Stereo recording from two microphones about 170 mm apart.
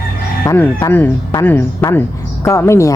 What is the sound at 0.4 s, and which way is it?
A woman's voice, 15° left (ahead or behind).